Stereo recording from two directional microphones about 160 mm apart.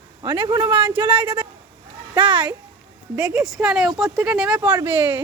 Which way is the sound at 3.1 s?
5° right (ahead or behind).